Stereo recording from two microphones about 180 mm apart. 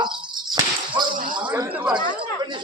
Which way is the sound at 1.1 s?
50° right (ahead or behind).